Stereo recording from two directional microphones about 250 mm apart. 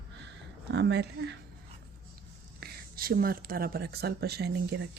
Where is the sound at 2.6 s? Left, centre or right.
Right.